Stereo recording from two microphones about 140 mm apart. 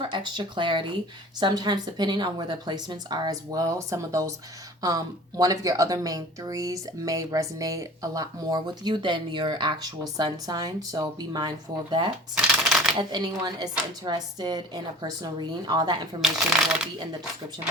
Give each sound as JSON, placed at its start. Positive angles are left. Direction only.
{"t": 0.0, "sound": "a woman's voice", "side_deg": -35}
{"t": 12.6, "sound": "shuffling cards", "side_deg": 0}
{"t": 13.0, "sound": "a woman's voice", "side_deg": -30}
{"t": 16.2, "sound": "speech", "side_deg": -5}